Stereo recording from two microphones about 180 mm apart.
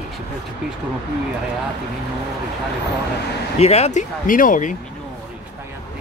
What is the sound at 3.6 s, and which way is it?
Speech, 35° left (ahead or behind).